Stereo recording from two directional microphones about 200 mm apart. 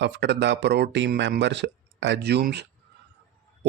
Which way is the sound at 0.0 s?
60° right (ahead or behind).